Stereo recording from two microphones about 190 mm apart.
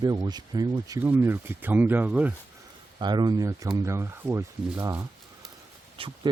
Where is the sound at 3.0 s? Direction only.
25° right (ahead or behind).